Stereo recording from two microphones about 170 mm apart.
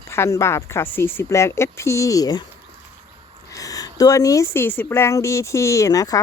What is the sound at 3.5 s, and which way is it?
A woman's voice, 20° left (ahead or behind).